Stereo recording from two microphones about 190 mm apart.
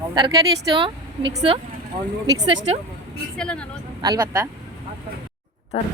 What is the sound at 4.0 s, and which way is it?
Speech, 15° right (ahead or behind).